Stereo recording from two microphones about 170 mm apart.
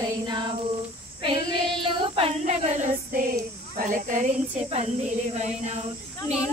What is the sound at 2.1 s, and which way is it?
Music, 40° right (ahead or behind).